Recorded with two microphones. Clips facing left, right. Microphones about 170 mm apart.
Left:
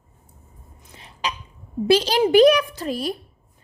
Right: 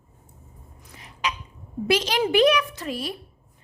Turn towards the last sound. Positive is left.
turn(degrees=40)  # may be behind; listen again after turning